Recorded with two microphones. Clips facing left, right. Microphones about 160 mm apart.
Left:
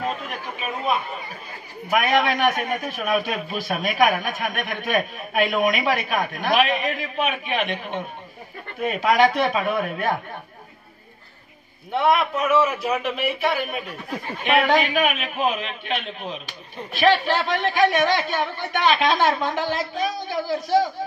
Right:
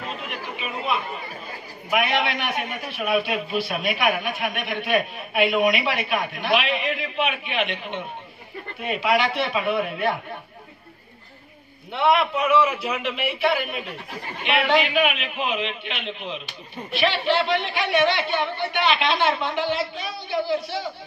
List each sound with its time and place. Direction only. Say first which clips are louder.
0.0 s chatter: left 4 dB; 45° left (ahead or behind)
1.9 s a man's voice: left 3 dB; 45° left (ahead or behind)
11.9 s a man's voice: even; 45° left (ahead or behind)